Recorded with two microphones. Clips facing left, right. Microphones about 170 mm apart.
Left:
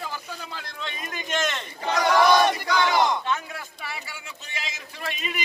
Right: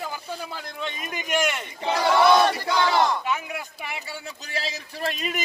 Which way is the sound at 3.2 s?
15° right (ahead or behind).